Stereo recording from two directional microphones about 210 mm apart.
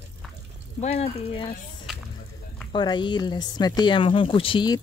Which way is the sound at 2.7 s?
20° left (ahead or behind).